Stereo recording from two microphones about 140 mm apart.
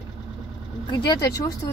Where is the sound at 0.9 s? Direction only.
25° left (ahead or behind).